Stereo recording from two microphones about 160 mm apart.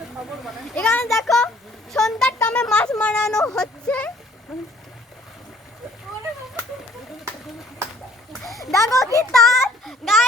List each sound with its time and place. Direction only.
0.3 s a child's voice: centre (ahead or behind)
1.9 s a sound: 5° left (ahead or behind)
3.0 s speech: 5° left (ahead or behind)
8.3 s splash: centre (ahead or behind)
8.7 s a child's voice: 20° left (ahead or behind)
9.3 s a child's voice: centre (ahead or behind)